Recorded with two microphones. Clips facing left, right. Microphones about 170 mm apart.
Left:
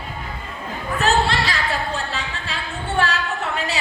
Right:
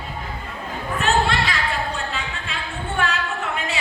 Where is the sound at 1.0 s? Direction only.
35° left (ahead or behind).